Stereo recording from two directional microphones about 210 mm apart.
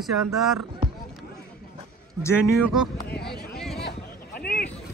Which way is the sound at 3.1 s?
50° left (ahead or behind).